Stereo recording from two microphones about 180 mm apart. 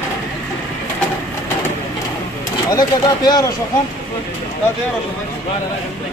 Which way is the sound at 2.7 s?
20° left (ahead or behind).